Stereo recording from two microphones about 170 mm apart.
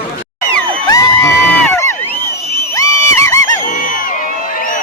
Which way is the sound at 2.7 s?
15° left (ahead or behind).